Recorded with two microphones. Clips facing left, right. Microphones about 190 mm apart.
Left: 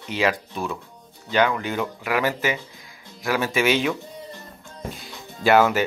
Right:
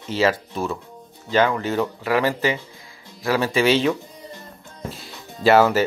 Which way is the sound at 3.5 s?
30° right (ahead or behind).